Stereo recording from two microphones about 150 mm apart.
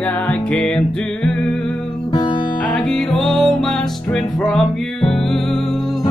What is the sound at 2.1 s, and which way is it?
Music, 25° left (ahead or behind).